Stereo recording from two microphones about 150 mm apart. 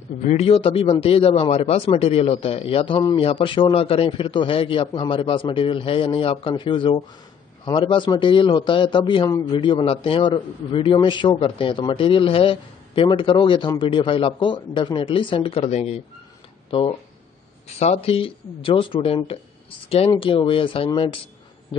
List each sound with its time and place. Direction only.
0.2 s a man's voice: 50° left (ahead or behind)
17.7 s a man's voice: 45° left (ahead or behind)